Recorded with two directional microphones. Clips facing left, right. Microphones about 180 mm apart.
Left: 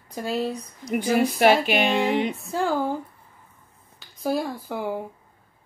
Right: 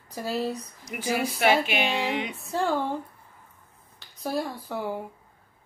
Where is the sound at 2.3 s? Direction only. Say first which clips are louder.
Left 2 dB; centre (ahead or behind).